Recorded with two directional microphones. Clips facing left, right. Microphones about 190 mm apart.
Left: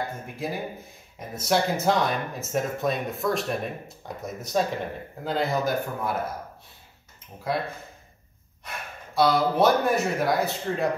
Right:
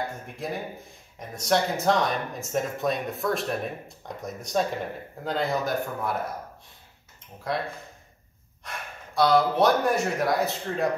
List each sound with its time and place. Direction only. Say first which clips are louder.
0.4 s speech: left 1 dB; centre (ahead or behind)
7.5 s speech: left 2 dB; 5° left (ahead or behind)
8.6 s speech: left 1 dB; centre (ahead or behind)